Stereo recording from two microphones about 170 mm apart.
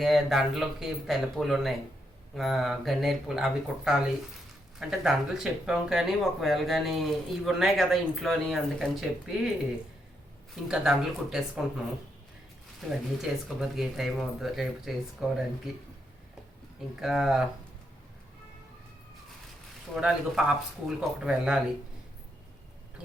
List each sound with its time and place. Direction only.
0.0 s speech: centre (ahead or behind)
10.5 s speech: 5° right (ahead or behind)
13.3 s speech: 5° right (ahead or behind)
17.0 s speech: 5° right (ahead or behind)
20.0 s speech: 5° right (ahead or behind)